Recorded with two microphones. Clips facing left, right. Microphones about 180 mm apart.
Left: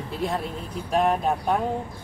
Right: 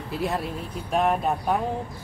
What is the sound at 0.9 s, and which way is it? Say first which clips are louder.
Speech: left 1 dB; 5° right (ahead or behind).